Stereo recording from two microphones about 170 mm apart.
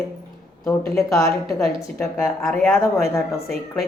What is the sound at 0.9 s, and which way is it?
Speech, 15° left (ahead or behind).